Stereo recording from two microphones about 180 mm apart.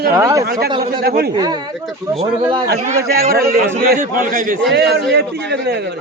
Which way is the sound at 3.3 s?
60° right (ahead or behind).